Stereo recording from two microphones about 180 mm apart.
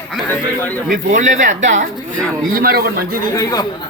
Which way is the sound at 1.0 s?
45° right (ahead or behind).